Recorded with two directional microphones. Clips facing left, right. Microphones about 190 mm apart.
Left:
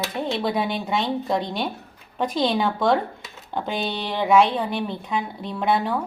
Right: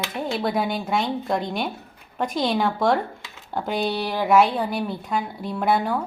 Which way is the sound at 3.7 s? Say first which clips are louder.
Right 4 dB; 20° left (ahead or behind).